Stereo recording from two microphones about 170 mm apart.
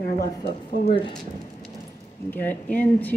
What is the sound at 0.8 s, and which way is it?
Speech, 30° left (ahead or behind).